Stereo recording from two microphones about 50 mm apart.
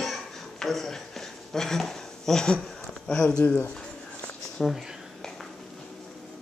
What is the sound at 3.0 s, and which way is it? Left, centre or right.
Speech, centre.